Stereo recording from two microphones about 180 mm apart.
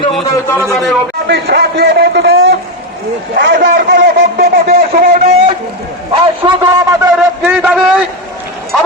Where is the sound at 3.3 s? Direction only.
70° right (ahead or behind); by 5.2 s 55° right (ahead or behind).